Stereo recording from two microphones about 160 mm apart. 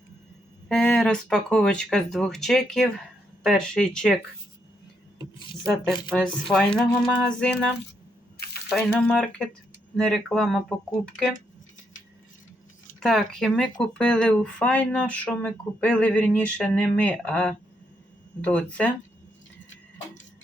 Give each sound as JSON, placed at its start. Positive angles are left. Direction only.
{"t": 0.7, "sound": "speech", "side_deg": 5}
{"t": 6.1, "sound": "speech", "side_deg": 5}
{"t": 8.7, "sound": "speech", "side_deg": 5}
{"t": 13.0, "sound": "speech", "side_deg": 0}